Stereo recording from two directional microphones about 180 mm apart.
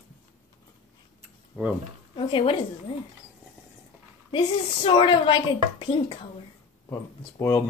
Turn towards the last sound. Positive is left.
turn(degrees=15)  # may be behind; listen again after turning